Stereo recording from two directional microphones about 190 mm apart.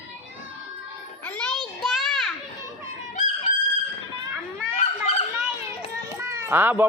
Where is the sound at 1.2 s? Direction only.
5° left (ahead or behind).